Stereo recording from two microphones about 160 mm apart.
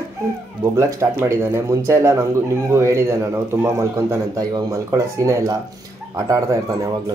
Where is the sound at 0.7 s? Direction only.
20° right (ahead or behind).